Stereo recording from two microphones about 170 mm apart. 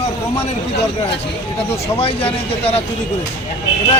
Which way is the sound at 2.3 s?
35° left (ahead or behind).